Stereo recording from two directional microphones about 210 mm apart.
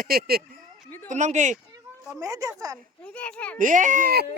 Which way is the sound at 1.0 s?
35° right (ahead or behind).